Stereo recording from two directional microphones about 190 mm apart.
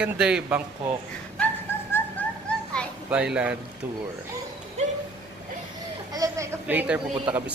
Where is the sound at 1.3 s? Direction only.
10° left (ahead or behind).